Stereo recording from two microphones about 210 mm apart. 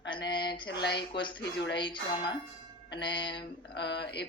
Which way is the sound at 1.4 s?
55° left (ahead or behind).